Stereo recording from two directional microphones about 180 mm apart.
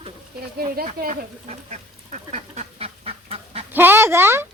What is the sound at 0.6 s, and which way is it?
Duck, 50° right (ahead or behind).